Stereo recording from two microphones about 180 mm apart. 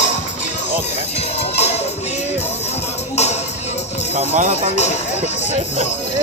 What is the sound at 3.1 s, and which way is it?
Music, 35° left (ahead or behind).